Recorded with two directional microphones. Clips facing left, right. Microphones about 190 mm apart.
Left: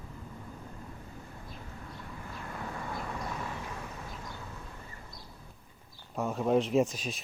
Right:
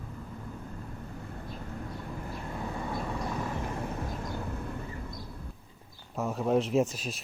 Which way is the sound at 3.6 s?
50° right (ahead or behind).